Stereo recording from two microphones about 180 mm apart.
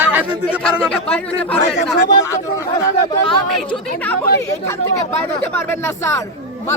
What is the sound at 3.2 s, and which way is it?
Speech, 10° left (ahead or behind).